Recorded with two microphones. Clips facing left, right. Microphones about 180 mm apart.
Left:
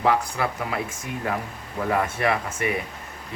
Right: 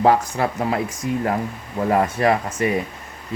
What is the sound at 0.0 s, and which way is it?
Speech, 40° right (ahead or behind).